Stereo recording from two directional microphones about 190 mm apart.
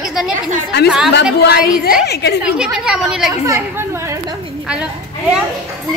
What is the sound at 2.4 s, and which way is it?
Speech, 5° right (ahead or behind).